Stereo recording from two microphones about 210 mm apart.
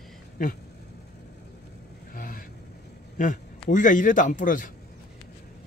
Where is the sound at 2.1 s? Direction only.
40° left (ahead or behind).